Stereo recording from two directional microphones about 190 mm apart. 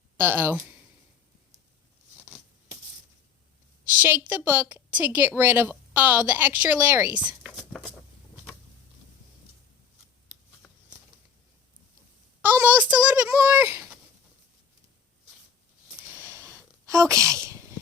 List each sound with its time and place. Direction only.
0.2 s a woman's voice: 10° right (ahead or behind)
4.4 s a woman's voice: 10° right (ahead or behind)
12.4 s speech: 10° right (ahead or behind)
16.0 s a sound: 10° right (ahead or behind)